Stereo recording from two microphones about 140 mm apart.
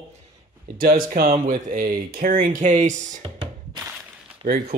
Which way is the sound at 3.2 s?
35° right (ahead or behind).